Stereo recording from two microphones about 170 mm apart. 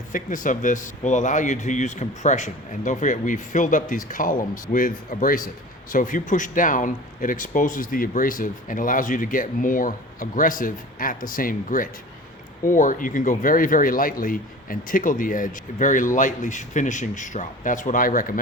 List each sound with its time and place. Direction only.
0.1 s a man's voice: 50° left (ahead or behind)